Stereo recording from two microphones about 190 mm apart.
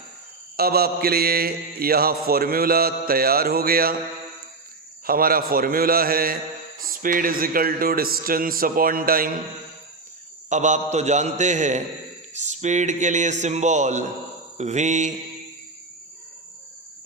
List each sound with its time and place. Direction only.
0.5 s mantra: 55° right (ahead or behind)
5.0 s mantra: 50° right (ahead or behind)
10.5 s a man's voice: 40° right (ahead or behind)